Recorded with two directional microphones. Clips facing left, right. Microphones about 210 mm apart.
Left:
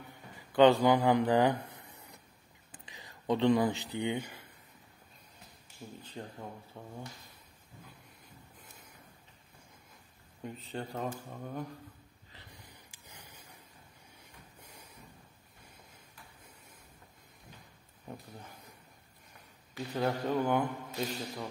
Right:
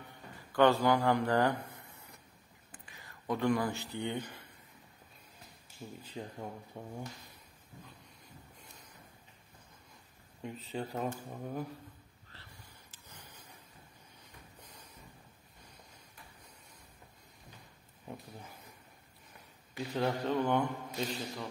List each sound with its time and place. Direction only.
0.5 s speech: 15° left (ahead or behind)
6.0 s speech: 10° right (ahead or behind)
10.4 s speech: centre (ahead or behind)
12.3 s a sound: 15° left (ahead or behind)
14.6 s a sound: 10° left (ahead or behind)
19.9 s speech: 5° left (ahead or behind)